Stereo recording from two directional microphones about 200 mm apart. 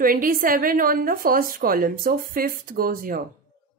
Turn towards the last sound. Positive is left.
turn(degrees=-45)  # may be behind; listen again after turning